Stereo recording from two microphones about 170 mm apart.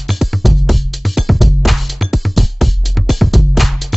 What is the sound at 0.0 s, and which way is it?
Music, centre (ahead or behind).